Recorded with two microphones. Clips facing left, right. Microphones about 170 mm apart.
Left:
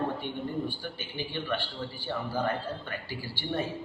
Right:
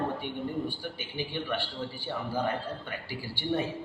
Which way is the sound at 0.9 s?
15° right (ahead or behind).